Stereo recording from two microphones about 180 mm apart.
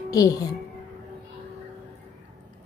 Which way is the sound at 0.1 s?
20° left (ahead or behind).